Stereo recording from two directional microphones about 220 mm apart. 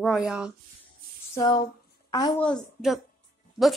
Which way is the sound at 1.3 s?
20° left (ahead or behind).